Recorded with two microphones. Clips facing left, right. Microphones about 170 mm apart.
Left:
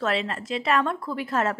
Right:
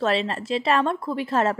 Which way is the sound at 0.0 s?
30° right (ahead or behind).